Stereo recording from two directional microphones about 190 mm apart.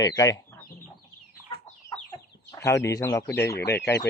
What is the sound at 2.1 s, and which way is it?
Speech, 15° left (ahead or behind).